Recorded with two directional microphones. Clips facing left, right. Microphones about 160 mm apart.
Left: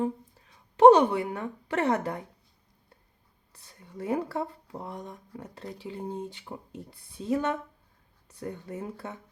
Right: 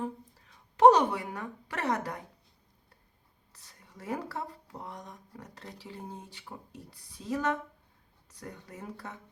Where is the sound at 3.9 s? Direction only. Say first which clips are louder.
Left 7 dB; 20° left (ahead or behind).